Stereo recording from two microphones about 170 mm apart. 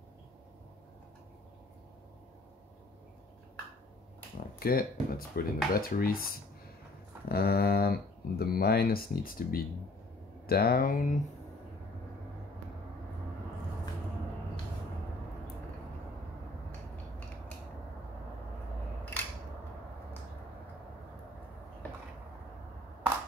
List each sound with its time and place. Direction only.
4.6 s speech: 60° left (ahead or behind)
7.2 s speech: 65° left (ahead or behind)